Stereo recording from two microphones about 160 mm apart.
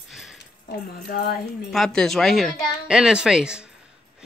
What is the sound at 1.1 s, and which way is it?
Speech, 70° left (ahead or behind).